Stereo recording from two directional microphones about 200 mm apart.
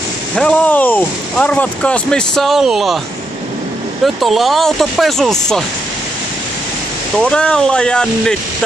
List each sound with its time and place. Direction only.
0.4 s speech: 5° left (ahead or behind)
4.0 s speech: centre (ahead or behind)
7.2 s speech: 5° left (ahead or behind)